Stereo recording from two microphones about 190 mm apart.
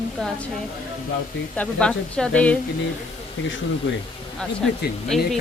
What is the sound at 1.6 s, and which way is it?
Speech, 5° left (ahead or behind).